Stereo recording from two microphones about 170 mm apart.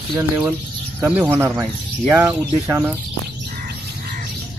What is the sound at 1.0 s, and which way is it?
Speech, 10° right (ahead or behind).